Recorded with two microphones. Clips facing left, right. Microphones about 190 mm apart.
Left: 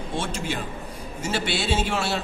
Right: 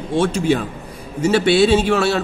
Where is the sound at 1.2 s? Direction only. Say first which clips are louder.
Right 12 dB; 65° right (ahead or behind).